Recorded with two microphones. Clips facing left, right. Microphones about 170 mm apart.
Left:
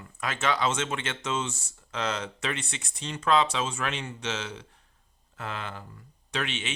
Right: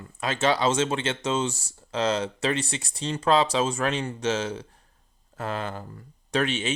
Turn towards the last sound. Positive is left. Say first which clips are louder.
# right 7 dB
turn(degrees=-40)  # may be behind; listen again after turning